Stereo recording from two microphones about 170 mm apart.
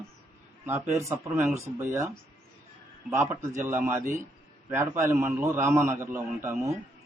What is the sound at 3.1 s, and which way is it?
A man's voice, 15° right (ahead or behind).